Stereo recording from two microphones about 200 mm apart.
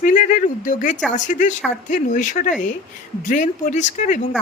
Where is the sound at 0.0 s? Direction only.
40° left (ahead or behind).